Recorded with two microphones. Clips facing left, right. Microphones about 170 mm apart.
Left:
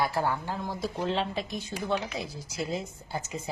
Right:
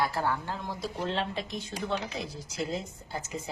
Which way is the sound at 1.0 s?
Centre (ahead or behind).